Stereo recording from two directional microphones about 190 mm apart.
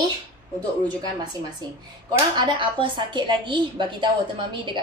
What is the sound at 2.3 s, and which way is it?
A woman's voice, 25° right (ahead or behind).